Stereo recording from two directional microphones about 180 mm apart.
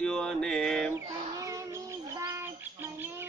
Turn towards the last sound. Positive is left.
turn(degrees=-10)  # may be behind; listen again after turning